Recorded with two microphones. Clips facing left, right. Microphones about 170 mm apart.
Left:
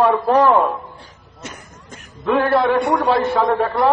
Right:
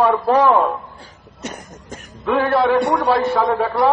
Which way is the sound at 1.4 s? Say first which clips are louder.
Right 5 dB; 35° right (ahead or behind).